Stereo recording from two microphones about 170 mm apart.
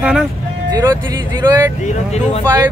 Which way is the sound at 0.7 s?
20° right (ahead or behind).